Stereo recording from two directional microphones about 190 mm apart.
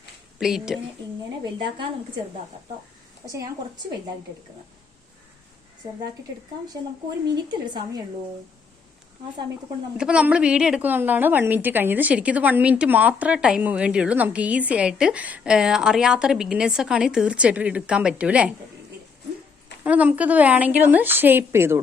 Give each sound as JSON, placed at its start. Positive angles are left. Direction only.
{"t": 0.3, "sound": "speech", "side_deg": -5}
{"t": 1.5, "sound": "a woman's voice", "side_deg": -25}
{"t": 3.2, "sound": "a woman's voice", "side_deg": -15}
{"t": 7.4, "sound": "a woman's voice", "side_deg": -25}
{"t": 10.0, "sound": "a woman's voice", "side_deg": -5}
{"t": 19.8, "sound": "a woman's voice", "side_deg": -10}